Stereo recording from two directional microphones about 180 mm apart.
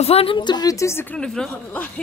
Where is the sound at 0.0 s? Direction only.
35° left (ahead or behind).